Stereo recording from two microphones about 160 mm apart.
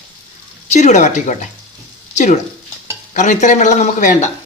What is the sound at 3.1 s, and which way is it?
Speech, 50° left (ahead or behind).